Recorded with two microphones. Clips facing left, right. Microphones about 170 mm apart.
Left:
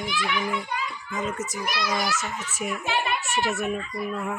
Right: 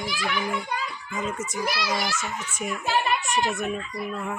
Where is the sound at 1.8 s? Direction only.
Centre (ahead or behind).